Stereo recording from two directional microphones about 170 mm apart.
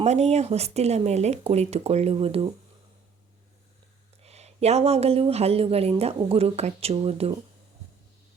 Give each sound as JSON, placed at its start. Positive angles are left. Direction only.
{"t": 0.0, "sound": "speech", "side_deg": -40}
{"t": 4.2, "sound": "speech", "side_deg": -40}